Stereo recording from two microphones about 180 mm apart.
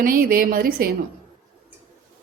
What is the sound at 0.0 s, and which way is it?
Speech, 55° right (ahead or behind).